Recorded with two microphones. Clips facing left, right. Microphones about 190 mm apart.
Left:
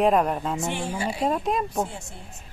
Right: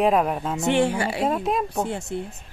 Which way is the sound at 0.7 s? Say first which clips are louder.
Right 7 dB; 70° right (ahead or behind).